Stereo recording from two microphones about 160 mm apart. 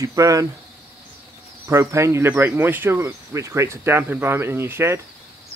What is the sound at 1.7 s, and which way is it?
Speech, 20° right (ahead or behind).